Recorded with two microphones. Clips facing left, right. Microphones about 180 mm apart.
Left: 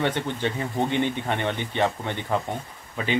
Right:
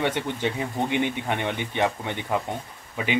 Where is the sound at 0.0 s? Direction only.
10° right (ahead or behind).